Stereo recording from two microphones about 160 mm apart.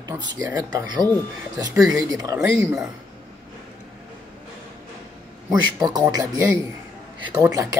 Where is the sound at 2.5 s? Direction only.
5° right (ahead or behind).